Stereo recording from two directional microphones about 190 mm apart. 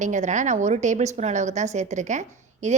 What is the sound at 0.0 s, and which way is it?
A woman's voice, 40° right (ahead or behind).